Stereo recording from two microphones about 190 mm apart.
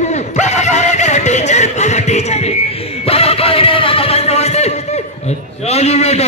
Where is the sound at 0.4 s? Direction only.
40° left (ahead or behind).